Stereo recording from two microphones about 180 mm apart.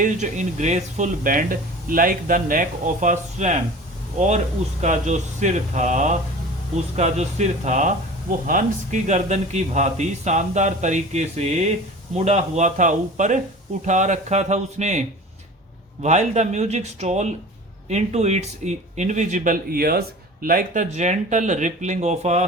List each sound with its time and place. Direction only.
0.0 s speech: 40° right (ahead or behind)
4.8 s speech: 40° right (ahead or behind)
16.0 s speech: 40° right (ahead or behind)